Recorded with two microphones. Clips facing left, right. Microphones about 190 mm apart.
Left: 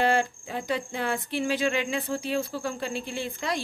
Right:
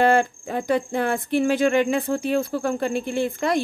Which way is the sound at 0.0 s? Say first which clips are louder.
Right 6 dB; 50° right (ahead or behind).